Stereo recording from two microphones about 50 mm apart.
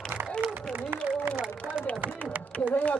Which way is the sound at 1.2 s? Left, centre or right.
Right.